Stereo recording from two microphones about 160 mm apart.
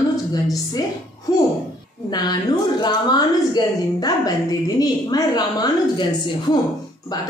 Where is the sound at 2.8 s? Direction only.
25° left (ahead or behind).